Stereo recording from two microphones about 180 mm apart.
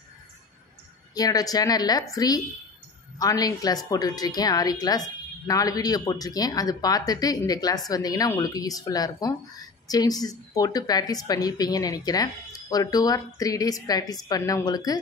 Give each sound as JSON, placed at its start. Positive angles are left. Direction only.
{"t": 1.1, "sound": "speech", "side_deg": 20}